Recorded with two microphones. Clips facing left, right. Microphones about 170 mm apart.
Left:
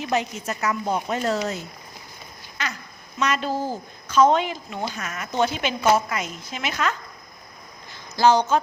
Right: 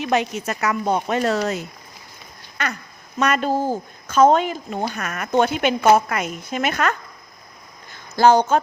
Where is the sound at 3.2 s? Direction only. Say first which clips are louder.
Right 4 dB; 55° right (ahead or behind).